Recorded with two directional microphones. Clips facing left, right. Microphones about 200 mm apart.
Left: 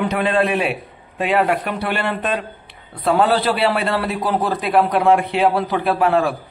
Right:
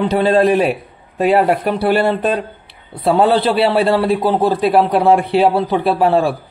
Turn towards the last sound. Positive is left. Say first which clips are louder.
# right 3 dB
turn(degrees=-30)  # may be behind; listen again after turning